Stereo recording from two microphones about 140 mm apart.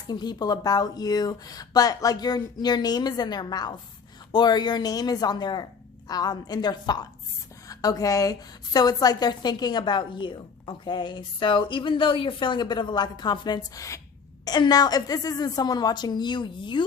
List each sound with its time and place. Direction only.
0.1 s a woman's voice: 30° left (ahead or behind)